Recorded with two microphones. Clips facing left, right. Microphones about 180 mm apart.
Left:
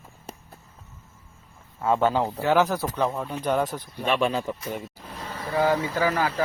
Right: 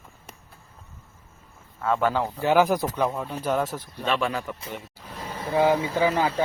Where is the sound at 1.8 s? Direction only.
20° left (ahead or behind).